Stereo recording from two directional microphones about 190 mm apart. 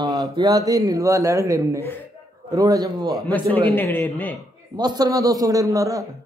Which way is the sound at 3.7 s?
10° left (ahead or behind).